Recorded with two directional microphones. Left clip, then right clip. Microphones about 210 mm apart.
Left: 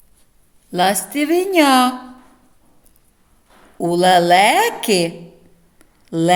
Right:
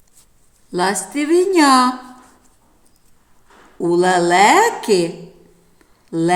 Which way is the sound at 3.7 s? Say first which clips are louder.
Left 2 dB; 55° left (ahead or behind).